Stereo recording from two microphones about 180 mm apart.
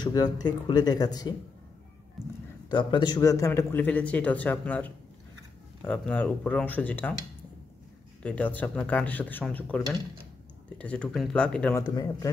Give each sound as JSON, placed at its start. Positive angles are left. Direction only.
{"t": 0.0, "sound": "speech", "side_deg": 20}
{"t": 2.7, "sound": "a man's voice", "side_deg": 25}
{"t": 8.2, "sound": "a man's voice", "side_deg": 5}
{"t": 11.8, "sound": "speech", "side_deg": 20}